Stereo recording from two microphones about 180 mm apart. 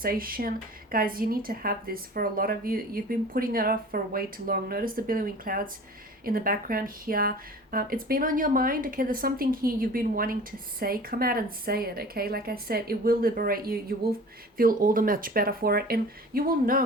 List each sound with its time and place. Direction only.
0.0 s a woman's voice: 55° right (ahead or behind)